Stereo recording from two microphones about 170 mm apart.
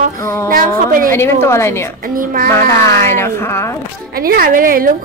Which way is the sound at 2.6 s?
15° left (ahead or behind).